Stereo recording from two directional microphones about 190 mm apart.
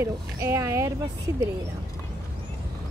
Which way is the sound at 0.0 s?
15° right (ahead or behind).